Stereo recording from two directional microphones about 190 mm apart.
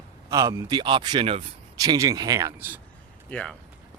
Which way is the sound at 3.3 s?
5° left (ahead or behind).